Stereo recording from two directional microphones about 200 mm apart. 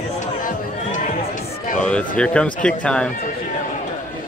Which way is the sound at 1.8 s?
5° left (ahead or behind).